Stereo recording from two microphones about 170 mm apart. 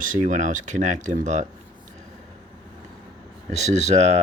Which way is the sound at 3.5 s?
40° right (ahead or behind).